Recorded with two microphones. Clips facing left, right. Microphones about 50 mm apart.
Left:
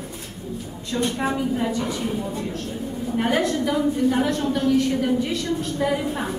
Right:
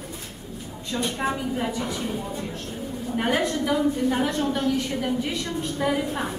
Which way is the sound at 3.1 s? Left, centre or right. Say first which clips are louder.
Left 2 dB; centre.